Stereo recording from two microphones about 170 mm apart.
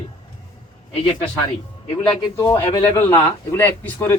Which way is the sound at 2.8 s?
10° left (ahead or behind).